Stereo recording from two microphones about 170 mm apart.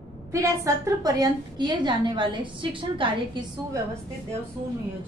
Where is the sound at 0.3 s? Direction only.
15° right (ahead or behind).